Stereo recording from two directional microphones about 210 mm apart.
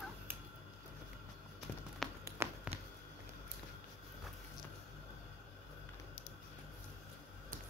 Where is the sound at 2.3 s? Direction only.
10° right (ahead or behind).